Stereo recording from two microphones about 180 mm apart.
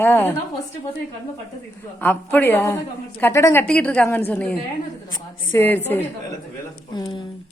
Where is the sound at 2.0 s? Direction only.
10° left (ahead or behind).